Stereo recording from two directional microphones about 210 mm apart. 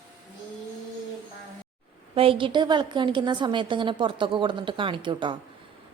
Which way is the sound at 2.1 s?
25° right (ahead or behind).